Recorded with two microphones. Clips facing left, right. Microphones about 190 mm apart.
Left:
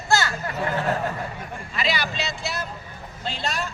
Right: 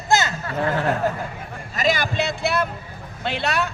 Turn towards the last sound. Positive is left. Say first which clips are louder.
# right 5 dB
turn(degrees=-65)  # may be behind; listen again after turning